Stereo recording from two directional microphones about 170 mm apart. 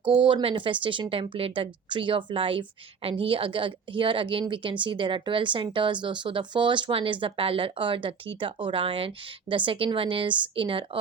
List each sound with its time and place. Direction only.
0.2 s speech: 30° right (ahead or behind)